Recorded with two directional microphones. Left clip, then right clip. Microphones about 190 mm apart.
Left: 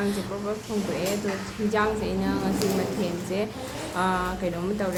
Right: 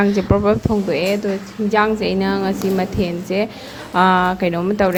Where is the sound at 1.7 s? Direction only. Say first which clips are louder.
Right 9 dB; 45° right (ahead or behind).